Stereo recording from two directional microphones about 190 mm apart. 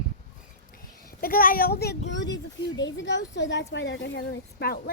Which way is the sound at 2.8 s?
75° left (ahead or behind).